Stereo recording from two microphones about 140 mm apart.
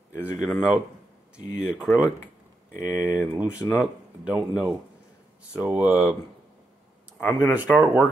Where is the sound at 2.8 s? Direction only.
10° right (ahead or behind).